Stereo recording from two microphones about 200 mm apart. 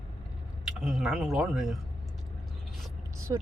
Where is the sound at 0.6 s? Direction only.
Centre (ahead or behind).